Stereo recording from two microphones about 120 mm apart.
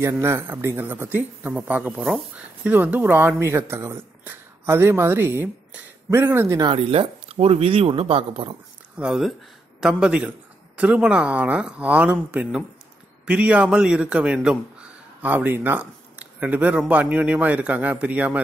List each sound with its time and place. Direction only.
0.0 s speech: 20° right (ahead or behind)
6.6 s speech: 45° right (ahead or behind)
8.9 s a man's voice: 5° right (ahead or behind)